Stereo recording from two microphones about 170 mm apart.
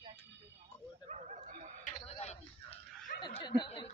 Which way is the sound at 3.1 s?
25° left (ahead or behind).